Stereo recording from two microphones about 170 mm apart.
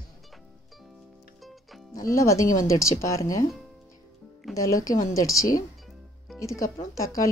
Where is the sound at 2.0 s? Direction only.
20° left (ahead or behind).